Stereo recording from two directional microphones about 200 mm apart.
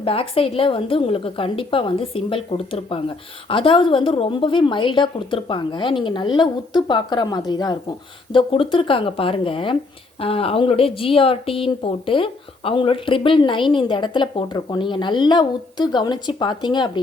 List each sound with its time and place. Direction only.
0.0 s a woman's voice: 30° left (ahead or behind)